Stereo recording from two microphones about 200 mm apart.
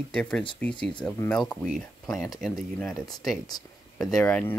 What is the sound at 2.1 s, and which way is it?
Speech, 15° left (ahead or behind).